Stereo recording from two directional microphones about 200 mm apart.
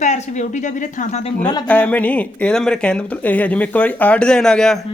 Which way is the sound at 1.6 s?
5° left (ahead or behind).